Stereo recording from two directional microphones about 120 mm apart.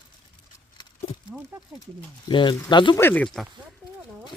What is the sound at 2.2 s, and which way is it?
Speech, 40° left (ahead or behind).